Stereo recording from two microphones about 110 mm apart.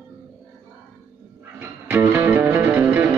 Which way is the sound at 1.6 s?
20° right (ahead or behind).